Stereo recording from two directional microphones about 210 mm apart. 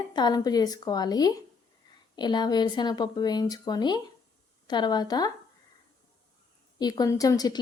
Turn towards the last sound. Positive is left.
turn(degrees=20)  # may be behind; listen again after turning